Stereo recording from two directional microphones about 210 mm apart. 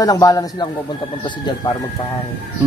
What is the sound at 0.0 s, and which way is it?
Speech, 15° left (ahead or behind).